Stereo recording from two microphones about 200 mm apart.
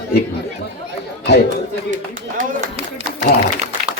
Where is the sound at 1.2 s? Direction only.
55° left (ahead or behind).